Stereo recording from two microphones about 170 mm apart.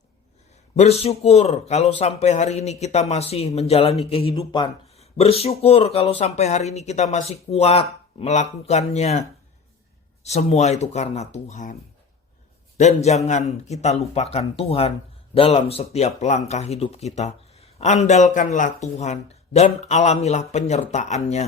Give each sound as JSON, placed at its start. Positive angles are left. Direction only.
{"t": 0.8, "sound": "speech", "side_deg": 35}
{"t": 10.2, "sound": "speech", "side_deg": 40}